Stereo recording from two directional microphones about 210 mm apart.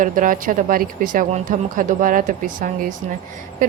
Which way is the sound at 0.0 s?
40° right (ahead or behind).